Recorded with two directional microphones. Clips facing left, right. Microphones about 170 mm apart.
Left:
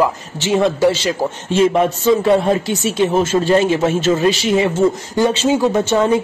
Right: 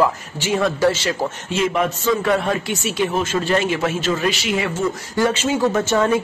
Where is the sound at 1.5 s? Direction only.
30° left (ahead or behind).